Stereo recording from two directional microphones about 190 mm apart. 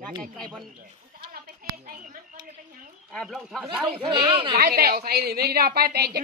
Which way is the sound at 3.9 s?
30° right (ahead or behind).